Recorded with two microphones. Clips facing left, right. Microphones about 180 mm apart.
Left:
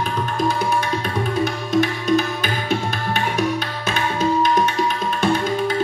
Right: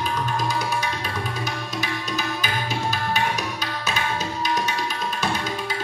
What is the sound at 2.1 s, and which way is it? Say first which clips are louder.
Music: left 8 dB; 55° left (ahead or behind).